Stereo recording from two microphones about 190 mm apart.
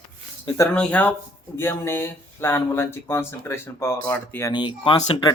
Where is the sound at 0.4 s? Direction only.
15° left (ahead or behind).